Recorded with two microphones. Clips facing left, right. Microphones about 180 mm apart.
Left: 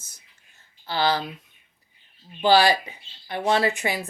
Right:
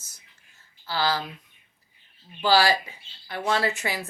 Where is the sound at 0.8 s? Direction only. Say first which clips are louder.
Left 3 dB; 20° left (ahead or behind).